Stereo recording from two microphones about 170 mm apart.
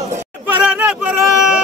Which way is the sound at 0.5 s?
5° right (ahead or behind).